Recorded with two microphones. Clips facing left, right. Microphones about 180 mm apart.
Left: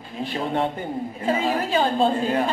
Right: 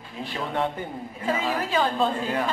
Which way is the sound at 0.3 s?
30° left (ahead or behind).